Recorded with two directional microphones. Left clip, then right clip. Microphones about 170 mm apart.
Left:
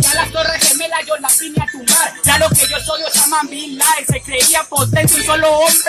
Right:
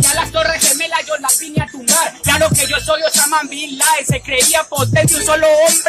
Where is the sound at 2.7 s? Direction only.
Centre (ahead or behind).